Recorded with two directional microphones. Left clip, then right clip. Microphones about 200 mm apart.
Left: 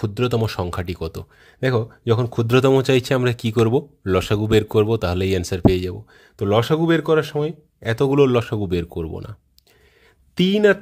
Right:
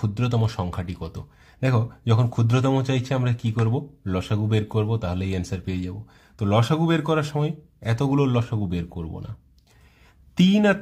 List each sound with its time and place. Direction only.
0.0 s speech: 35° left (ahead or behind)
10.3 s speech: 35° left (ahead or behind)